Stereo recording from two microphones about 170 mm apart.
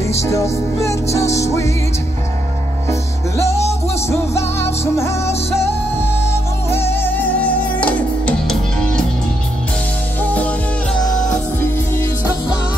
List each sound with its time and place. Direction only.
0.1 s music: 15° left (ahead or behind)
2.9 s music: 15° left (ahead or behind)
6.3 s music: 15° left (ahead or behind)
10.2 s music: 10° left (ahead or behind)